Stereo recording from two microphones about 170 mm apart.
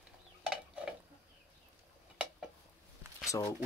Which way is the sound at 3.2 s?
20° left (ahead or behind).